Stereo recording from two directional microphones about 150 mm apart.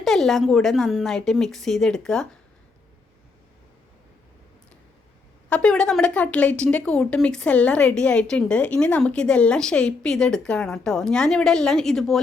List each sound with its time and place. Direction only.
0.0 s speech: centre (ahead or behind)
5.5 s speech: 5° left (ahead or behind)